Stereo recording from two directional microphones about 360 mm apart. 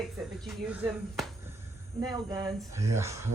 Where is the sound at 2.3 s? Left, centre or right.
Centre.